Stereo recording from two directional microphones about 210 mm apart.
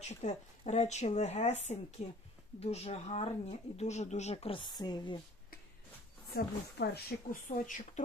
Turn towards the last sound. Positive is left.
turn(degrees=40)  # may be behind; listen again after turning